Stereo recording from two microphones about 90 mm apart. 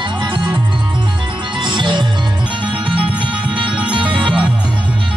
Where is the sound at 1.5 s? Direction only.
65° right (ahead or behind).